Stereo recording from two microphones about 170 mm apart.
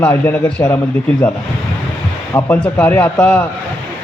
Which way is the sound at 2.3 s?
10° left (ahead or behind).